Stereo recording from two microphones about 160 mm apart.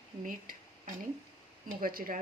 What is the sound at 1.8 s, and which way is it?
Speech, 65° right (ahead or behind).